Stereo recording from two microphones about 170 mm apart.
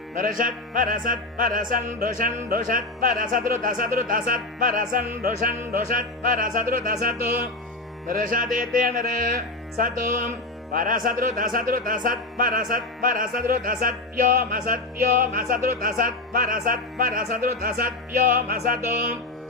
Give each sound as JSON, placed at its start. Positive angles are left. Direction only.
{"t": 0.2, "sound": "music", "side_deg": -55}